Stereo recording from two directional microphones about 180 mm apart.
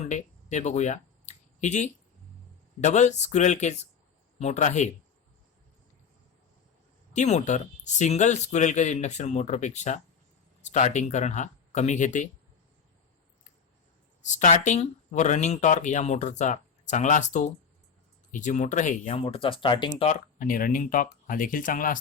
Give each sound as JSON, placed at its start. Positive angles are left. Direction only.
{"t": 0.0, "sound": "a sound", "side_deg": 40}
{"t": 2.8, "sound": "speech", "side_deg": 40}
{"t": 7.1, "sound": "speech", "side_deg": 40}
{"t": 14.3, "sound": "speech", "side_deg": 40}
{"t": 20.0, "sound": "speech", "side_deg": 45}